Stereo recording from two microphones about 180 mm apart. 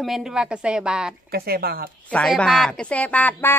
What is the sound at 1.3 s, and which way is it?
Speech, 60° right (ahead or behind).